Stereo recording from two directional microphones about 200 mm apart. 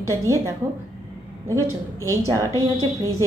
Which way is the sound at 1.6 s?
15° right (ahead or behind).